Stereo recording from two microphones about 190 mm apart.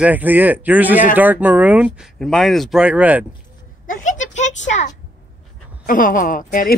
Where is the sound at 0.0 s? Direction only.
10° right (ahead or behind).